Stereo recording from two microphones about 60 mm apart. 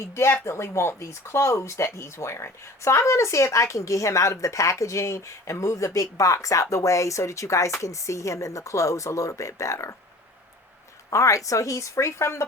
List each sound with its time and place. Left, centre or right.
0.0 s speech: left
11.1 s speech: left